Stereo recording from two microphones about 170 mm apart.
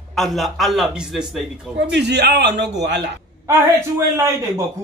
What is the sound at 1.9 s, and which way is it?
A man's voice, 90° right.